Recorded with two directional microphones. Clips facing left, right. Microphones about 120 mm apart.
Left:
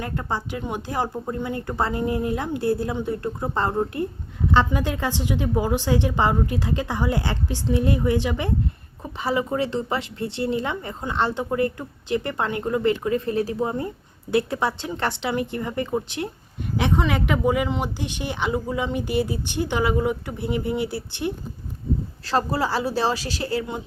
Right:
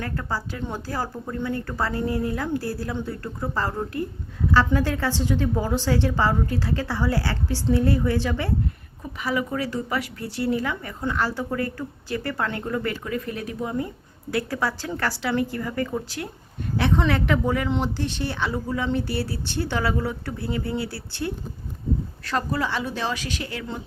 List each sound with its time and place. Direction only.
0.0 s a woman's voice: 20° left (ahead or behind)
9.1 s a woman's voice: 30° left (ahead or behind)
22.2 s speech: 30° left (ahead or behind)